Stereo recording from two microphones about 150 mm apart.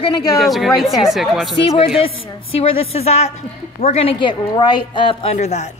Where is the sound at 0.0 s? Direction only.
30° left (ahead or behind).